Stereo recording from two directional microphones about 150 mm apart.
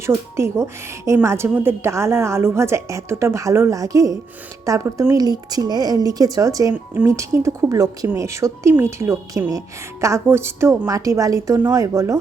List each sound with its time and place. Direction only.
0.0 s a woman's voice: 15° right (ahead or behind)